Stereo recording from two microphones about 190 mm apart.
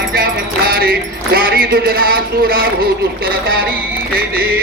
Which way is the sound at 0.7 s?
50° right (ahead or behind).